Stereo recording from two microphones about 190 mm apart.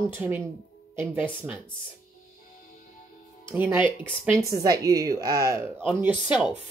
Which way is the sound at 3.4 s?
10° right (ahead or behind).